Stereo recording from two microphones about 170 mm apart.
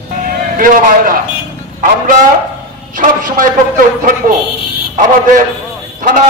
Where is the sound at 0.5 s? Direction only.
55° right (ahead or behind).